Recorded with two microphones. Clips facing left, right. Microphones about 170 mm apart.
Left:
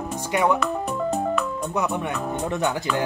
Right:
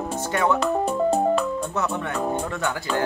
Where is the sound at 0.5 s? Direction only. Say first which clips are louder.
Right 3 dB; 30° right (ahead or behind).